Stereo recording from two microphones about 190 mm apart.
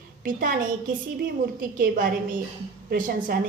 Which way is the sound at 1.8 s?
45° right (ahead or behind).